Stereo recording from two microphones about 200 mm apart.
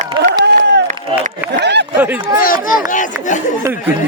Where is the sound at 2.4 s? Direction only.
45° left (ahead or behind).